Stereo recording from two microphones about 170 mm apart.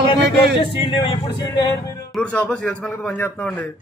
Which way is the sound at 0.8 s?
30° left (ahead or behind).